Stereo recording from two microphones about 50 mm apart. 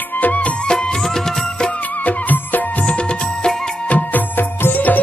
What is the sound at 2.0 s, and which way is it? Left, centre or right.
Music, left.